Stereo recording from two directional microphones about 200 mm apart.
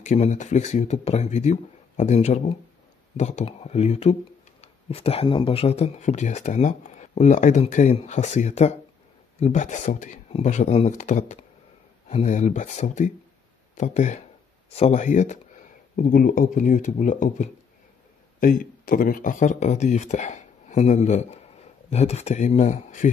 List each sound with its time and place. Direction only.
0.0 s speech: 35° left (ahead or behind)